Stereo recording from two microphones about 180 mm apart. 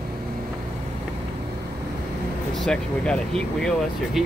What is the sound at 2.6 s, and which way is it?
Speech, 5° left (ahead or behind).